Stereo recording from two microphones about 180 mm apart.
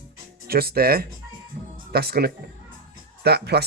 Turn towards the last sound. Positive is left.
turn(degrees=-65)  # may be behind; listen again after turning